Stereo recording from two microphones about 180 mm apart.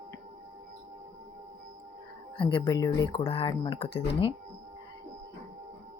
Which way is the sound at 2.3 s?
25° left (ahead or behind).